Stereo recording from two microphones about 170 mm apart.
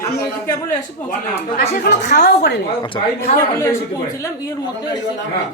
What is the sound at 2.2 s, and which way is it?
Speech, 75° left (ahead or behind).